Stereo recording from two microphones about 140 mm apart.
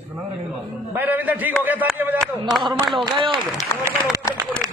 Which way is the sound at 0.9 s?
10° right (ahead or behind).